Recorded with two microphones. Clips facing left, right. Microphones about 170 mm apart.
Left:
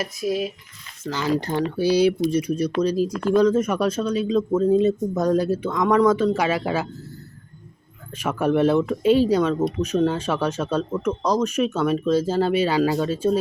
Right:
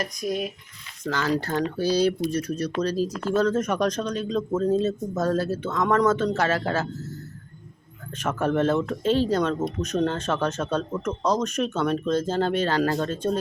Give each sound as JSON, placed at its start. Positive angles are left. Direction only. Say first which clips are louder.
{"t": 0.0, "sound": "stir", "louder": "left 3 dB", "side_deg": 5}
{"t": 1.0, "sound": "speech", "louder": "left 2 dB", "side_deg": 10}
{"t": 8.2, "sound": "speech", "louder": "left 4 dB", "side_deg": 10}